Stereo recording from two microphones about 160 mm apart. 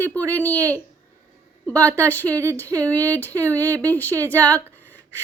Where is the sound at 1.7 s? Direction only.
10° left (ahead or behind).